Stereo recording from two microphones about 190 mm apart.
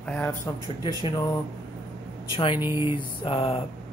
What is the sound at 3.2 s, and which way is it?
Speech, 30° left (ahead or behind).